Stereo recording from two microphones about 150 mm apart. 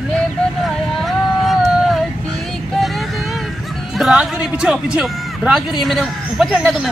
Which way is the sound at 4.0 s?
5° right (ahead or behind).